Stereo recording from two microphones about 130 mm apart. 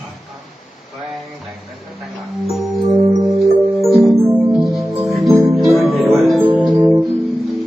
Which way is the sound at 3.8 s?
Centre (ahead or behind).